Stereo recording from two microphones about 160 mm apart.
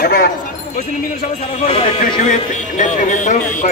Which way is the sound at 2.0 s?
50° left (ahead or behind).